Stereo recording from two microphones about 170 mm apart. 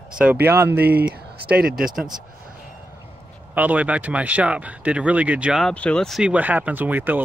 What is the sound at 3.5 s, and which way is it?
Speech, 10° right (ahead or behind).